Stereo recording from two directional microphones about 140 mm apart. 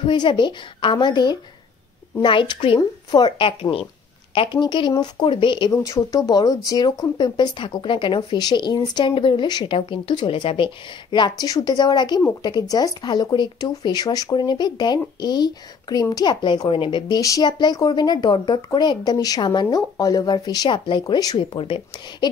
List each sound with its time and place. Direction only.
0.0 s speech: 35° left (ahead or behind)
5.7 s speech: 25° left (ahead or behind)
17.2 s speech: 25° left (ahead or behind)